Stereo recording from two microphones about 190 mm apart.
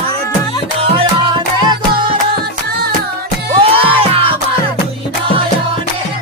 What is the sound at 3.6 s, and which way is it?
Music, 30° right (ahead or behind).